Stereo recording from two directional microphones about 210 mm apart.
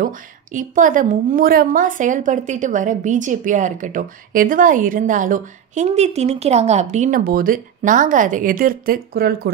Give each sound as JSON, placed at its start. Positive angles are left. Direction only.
{"t": 0.0, "sound": "a woman's voice", "side_deg": -40}